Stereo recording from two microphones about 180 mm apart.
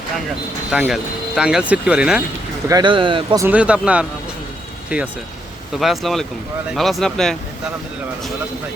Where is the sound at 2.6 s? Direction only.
25° right (ahead or behind).